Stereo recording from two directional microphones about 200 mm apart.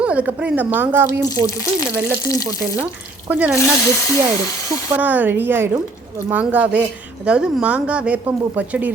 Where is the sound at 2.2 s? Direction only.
15° left (ahead or behind).